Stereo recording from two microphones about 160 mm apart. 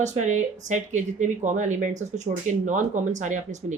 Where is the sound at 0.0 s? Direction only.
50° right (ahead or behind).